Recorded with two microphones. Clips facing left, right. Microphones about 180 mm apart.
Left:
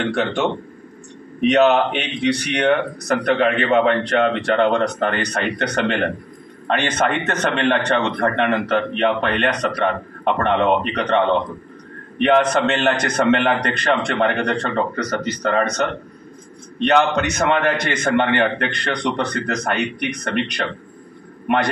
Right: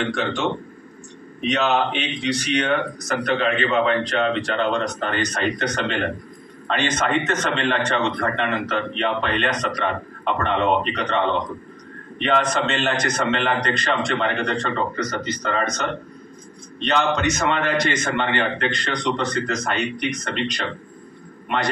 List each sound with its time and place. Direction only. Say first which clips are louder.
0.1 s a man's voice: left 4 dB; 60° left (ahead or behind)
1.5 s a man's voice: left 6 dB; 55° left (ahead or behind)
12.2 s a man's voice: left 5 dB; 60° left (ahead or behind)